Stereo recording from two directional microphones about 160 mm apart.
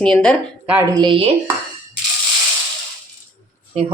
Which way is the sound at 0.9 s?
30° right (ahead or behind).